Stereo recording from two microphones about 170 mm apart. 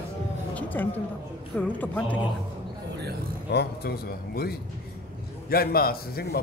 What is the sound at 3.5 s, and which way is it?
A man's voice, 70° left (ahead or behind).